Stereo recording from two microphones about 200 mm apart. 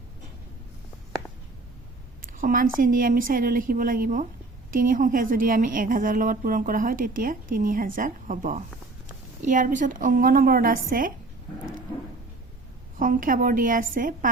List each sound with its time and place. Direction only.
2.3 s a woman's voice: 45° right (ahead or behind)
13.0 s a woman's voice: 40° right (ahead or behind)